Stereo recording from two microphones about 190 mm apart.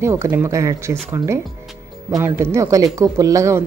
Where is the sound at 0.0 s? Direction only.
15° right (ahead or behind).